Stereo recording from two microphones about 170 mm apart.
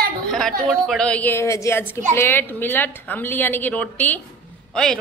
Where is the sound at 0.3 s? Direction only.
Centre (ahead or behind).